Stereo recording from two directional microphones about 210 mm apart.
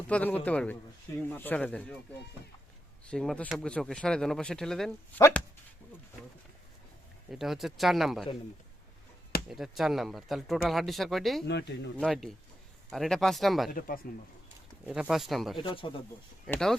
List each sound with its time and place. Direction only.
0.1 s speech: 5° left (ahead or behind)
3.1 s speech: 5° left (ahead or behind)
7.3 s speech: centre (ahead or behind)
9.5 s speech: centre (ahead or behind)
11.4 s speech: 55° left (ahead or behind)
11.9 s speech: centre (ahead or behind)
13.7 s speech: 45° left (ahead or behind)
14.8 s speech: 5° right (ahead or behind)
15.5 s speech: 25° left (ahead or behind)
16.5 s speech: 5° left (ahead or behind)